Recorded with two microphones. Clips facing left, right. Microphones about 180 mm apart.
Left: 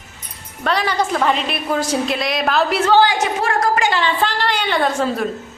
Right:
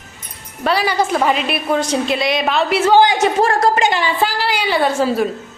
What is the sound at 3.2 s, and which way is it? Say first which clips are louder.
A woman's voice: right 4 dB; 30° right (ahead or behind).